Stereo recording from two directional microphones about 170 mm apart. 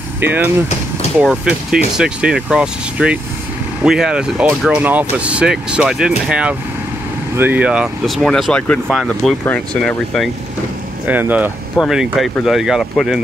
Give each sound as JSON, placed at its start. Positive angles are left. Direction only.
{"t": 0.2, "sound": "speech", "side_deg": -10}
{"t": 11.1, "sound": "speech", "side_deg": -10}